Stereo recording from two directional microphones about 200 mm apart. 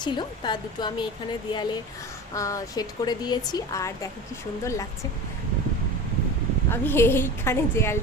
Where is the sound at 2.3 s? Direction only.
15° left (ahead or behind).